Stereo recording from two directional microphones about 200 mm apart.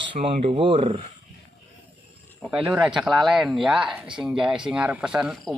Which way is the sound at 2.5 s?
10° right (ahead or behind).